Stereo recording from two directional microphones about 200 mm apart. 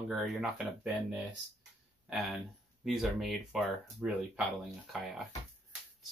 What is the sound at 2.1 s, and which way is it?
Speech, 5° right (ahead or behind).